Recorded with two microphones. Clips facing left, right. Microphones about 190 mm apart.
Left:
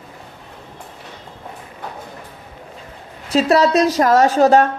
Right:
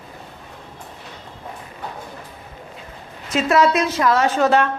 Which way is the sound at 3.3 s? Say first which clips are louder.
Left 3 dB; 35° left (ahead or behind).